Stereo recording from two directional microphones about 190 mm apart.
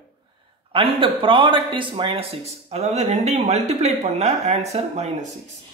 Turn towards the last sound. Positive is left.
turn(degrees=-35)  # may be behind; listen again after turning